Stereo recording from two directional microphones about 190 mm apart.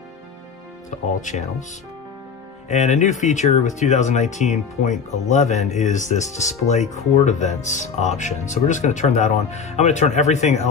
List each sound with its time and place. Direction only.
0.8 s speech: 40° left (ahead or behind)
2.7 s speech: 40° left (ahead or behind)